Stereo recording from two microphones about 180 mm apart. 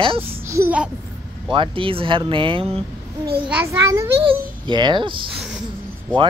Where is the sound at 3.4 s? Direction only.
10° right (ahead or behind).